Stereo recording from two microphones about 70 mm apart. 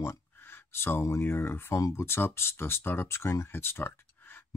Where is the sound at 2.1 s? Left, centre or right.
Left.